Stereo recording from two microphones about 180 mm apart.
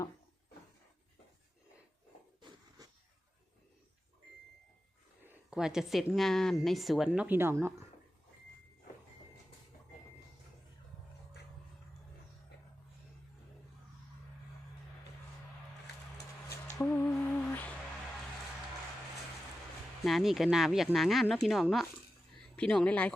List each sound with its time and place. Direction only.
2.4 s a sound: 20° right (ahead or behind)
5.2 s a woman's voice: 5° right (ahead or behind)
16.7 s humming: 10° left (ahead or behind)
20.1 s a woman's voice: centre (ahead or behind)